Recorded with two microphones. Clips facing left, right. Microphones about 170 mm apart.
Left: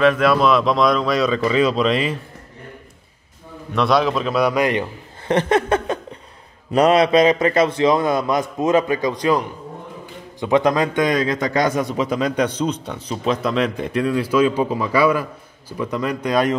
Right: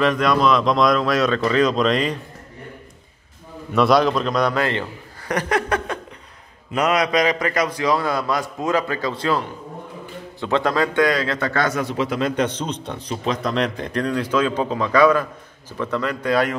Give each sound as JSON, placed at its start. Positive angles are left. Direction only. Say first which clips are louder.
{"t": 0.0, "sound": "speech", "louder": "left 2 dB", "side_deg": 5}
{"t": 3.7, "sound": "speech", "louder": "right 1 dB", "side_deg": 0}
{"t": 5.3, "sound": "a man's voice", "louder": "left 4 dB", "side_deg": 25}